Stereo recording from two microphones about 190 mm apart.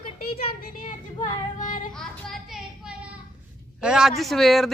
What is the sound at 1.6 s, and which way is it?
Child singing, 40° left (ahead or behind).